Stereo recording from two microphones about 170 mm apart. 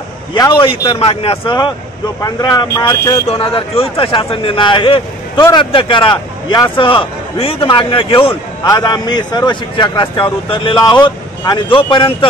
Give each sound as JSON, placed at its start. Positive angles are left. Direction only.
{"t": 0.3, "sound": "a man's voice", "side_deg": 25}
{"t": 3.3, "sound": "a man's voice", "side_deg": 35}